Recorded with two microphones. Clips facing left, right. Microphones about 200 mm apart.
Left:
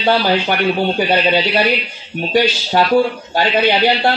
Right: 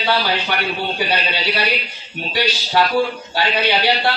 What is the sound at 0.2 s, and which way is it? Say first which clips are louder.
Speech: left 6 dB; 50° left (ahead or behind).